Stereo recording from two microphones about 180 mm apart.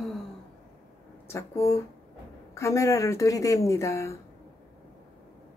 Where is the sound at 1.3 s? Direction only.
15° left (ahead or behind).